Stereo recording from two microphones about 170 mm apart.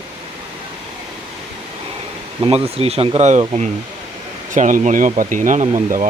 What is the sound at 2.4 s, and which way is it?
Speech, 30° right (ahead or behind).